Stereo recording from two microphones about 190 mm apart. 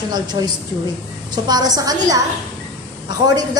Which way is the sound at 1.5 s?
20° right (ahead or behind).